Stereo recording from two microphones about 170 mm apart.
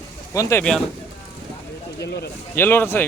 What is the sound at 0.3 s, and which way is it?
Speech, 20° left (ahead or behind).